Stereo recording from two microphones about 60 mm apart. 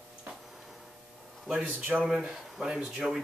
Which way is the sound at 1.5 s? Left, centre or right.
Right.